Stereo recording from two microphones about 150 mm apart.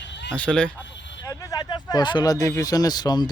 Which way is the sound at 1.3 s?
25° left (ahead or behind).